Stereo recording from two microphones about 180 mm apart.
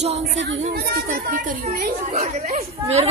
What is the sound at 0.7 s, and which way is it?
Speech, 55° right (ahead or behind).